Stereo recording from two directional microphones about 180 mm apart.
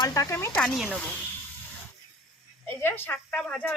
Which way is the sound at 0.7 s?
5° right (ahead or behind).